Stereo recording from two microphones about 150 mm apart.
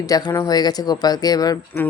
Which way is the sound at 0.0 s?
25° left (ahead or behind).